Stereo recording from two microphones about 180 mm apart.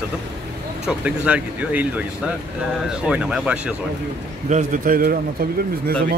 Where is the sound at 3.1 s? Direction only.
5° right (ahead or behind).